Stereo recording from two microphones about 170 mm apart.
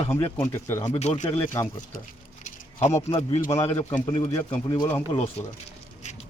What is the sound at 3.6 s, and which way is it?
Speech, 40° left (ahead or behind).